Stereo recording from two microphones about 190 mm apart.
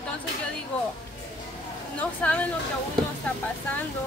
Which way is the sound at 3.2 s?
10° left (ahead or behind).